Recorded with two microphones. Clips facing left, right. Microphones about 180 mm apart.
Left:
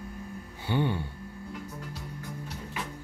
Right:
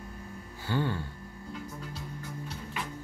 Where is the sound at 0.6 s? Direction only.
20° left (ahead or behind).